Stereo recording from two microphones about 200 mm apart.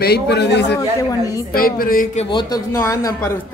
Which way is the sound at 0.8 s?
15° left (ahead or behind).